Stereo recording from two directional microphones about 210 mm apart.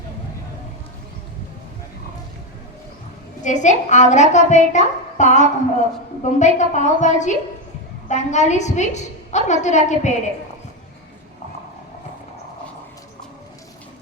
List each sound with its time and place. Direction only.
3.4 s a woman's voice: 35° left (ahead or behind)